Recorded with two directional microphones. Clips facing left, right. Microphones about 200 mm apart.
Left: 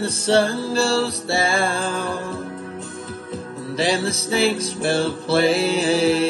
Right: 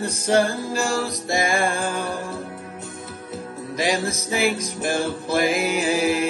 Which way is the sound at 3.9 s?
30° left (ahead or behind).